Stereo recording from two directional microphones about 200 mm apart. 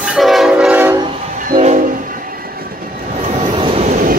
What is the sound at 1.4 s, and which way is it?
Train, 40° right (ahead or behind).